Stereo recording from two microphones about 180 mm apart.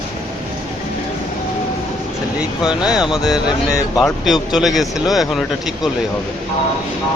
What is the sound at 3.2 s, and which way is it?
Speech, 20° left (ahead or behind).